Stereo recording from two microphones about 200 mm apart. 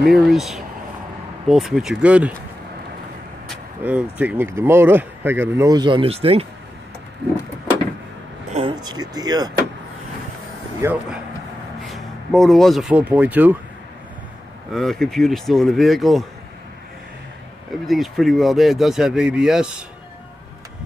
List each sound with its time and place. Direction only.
0.1 s speech: centre (ahead or behind)
3.8 s speech: 5° right (ahead or behind); by 6.4 s 30° right (ahead or behind)
8.5 s speech: 25° right (ahead or behind)
10.8 s speech: 10° right (ahead or behind)
14.7 s speech: centre (ahead or behind)
17.8 s speech: centre (ahead or behind)